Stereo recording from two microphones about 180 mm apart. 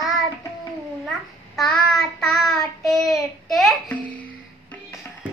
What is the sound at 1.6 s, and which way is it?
Child singing, centre (ahead or behind).